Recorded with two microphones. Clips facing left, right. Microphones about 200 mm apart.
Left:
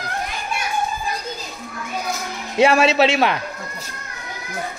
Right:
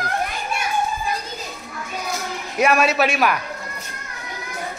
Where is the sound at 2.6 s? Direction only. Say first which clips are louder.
Left 3 dB; 25° left (ahead or behind).